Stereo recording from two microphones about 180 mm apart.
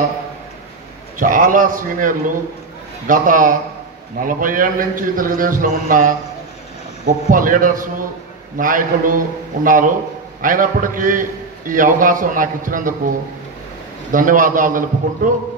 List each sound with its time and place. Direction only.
1.1 s a man's voice: 50° right (ahead or behind)
14.1 s a man's voice: 50° right (ahead or behind)